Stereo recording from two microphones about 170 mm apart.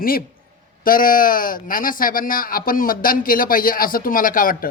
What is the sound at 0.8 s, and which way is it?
Speech, 55° left (ahead or behind).